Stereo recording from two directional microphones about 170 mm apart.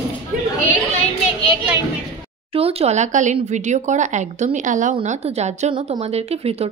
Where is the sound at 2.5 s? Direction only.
35° right (ahead or behind).